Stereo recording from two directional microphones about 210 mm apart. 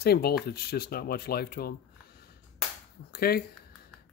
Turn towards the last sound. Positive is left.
turn(degrees=45)  # may be behind; listen again after turning